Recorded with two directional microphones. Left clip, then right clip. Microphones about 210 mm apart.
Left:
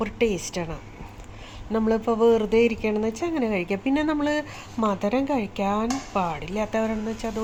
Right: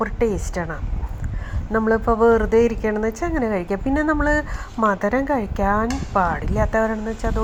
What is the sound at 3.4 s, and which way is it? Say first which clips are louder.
Speech: right 3 dB; 40° right (ahead or behind).